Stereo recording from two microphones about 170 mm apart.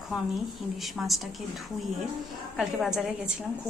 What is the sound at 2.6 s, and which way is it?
Speech, centre (ahead or behind).